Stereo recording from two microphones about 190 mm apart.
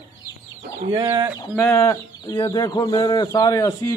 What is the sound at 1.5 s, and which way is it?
Speech, 15° left (ahead or behind).